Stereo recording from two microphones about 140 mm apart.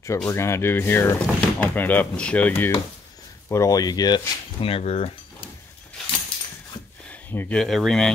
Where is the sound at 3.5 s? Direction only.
25° left (ahead or behind); by 5.1 s 45° left (ahead or behind).